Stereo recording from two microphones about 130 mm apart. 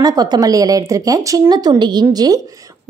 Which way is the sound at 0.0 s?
30° right (ahead or behind).